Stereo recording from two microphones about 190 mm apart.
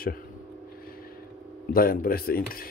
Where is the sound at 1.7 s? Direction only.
50° left (ahead or behind).